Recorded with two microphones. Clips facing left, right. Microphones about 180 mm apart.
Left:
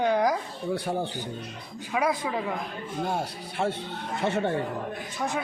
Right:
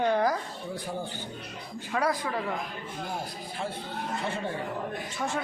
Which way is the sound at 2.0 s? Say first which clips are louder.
Left 2 dB; 10° left (ahead or behind).